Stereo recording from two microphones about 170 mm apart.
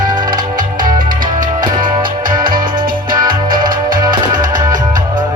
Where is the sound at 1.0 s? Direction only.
55° right (ahead or behind).